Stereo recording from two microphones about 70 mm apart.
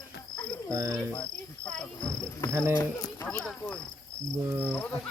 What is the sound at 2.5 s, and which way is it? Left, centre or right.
Speech, right.